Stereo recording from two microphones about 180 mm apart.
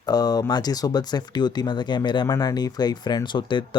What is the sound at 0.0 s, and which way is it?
Speech, 20° left (ahead or behind).